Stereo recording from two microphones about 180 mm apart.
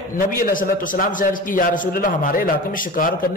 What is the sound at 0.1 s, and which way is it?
A man's voice, 50° left (ahead or behind).